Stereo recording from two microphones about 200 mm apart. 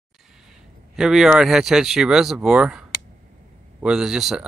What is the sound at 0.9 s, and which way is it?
Speech, 5° right (ahead or behind).